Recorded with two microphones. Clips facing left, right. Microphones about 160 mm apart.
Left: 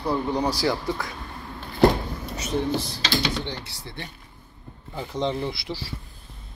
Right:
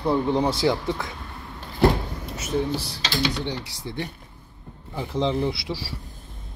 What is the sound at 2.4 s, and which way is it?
Speech, 5° right (ahead or behind).